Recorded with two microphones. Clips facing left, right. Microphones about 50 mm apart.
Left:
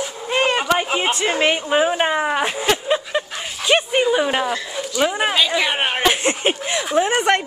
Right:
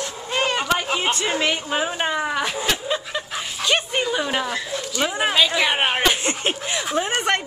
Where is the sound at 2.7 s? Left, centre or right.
Left.